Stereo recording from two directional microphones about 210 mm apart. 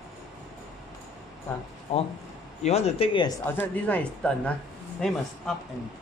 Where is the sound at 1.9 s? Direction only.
25° left (ahead or behind).